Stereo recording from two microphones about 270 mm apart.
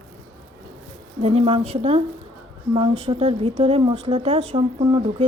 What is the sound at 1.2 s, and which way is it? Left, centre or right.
Speech, right.